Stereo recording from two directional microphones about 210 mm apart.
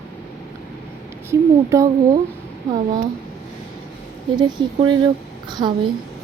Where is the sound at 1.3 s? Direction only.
15° right (ahead or behind).